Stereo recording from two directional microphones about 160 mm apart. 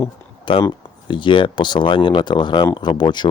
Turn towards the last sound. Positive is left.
turn(degrees=30)  # may be behind; listen again after turning